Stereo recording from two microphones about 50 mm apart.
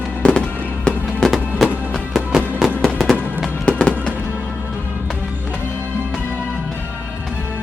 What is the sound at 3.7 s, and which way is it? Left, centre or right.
Music, left.